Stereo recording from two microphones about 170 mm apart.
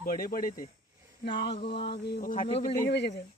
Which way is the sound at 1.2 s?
75° left (ahead or behind).